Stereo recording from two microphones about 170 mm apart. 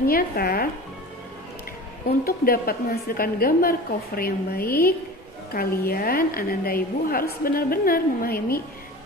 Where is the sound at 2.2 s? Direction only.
60° left (ahead or behind).